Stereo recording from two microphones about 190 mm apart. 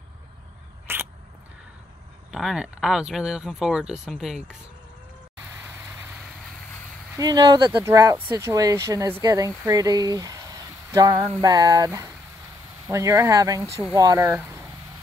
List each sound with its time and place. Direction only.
0.9 s a sound: 15° right (ahead or behind)
2.3 s speech: 5° right (ahead or behind)
7.2 s speech: 20° right (ahead or behind)